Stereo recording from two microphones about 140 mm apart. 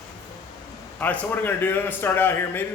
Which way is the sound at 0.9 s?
10° left (ahead or behind).